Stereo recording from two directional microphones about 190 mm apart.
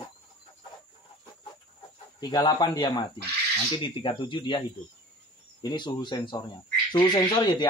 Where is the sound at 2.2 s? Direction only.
20° left (ahead or behind).